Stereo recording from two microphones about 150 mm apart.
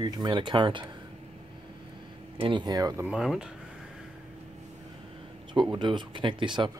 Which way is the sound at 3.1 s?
5° right (ahead or behind).